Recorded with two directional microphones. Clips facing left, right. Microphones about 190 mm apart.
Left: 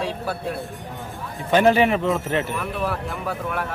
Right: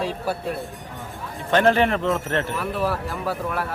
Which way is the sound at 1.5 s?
10° left (ahead or behind).